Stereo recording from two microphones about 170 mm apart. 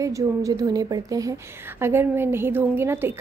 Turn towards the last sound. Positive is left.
turn(degrees=-15)  # may be behind; listen again after turning